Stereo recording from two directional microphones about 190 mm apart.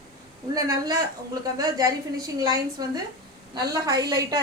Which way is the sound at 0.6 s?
20° right (ahead or behind).